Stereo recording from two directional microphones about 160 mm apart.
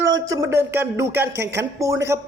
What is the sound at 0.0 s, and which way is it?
Speech, 20° right (ahead or behind).